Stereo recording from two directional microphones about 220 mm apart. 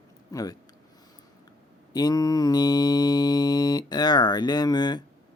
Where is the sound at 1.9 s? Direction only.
15° left (ahead or behind).